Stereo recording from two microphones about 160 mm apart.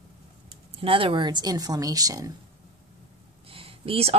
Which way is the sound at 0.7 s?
35° right (ahead or behind).